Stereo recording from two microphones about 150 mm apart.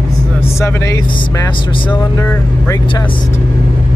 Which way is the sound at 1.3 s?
30° left (ahead or behind).